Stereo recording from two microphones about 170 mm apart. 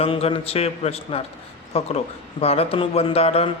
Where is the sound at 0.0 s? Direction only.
35° left (ahead or behind).